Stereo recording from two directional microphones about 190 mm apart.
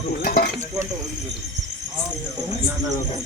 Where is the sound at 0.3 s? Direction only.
50° left (ahead or behind).